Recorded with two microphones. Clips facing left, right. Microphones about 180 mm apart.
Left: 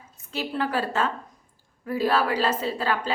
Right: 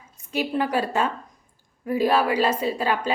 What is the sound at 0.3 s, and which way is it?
A woman's voice, 15° right (ahead or behind).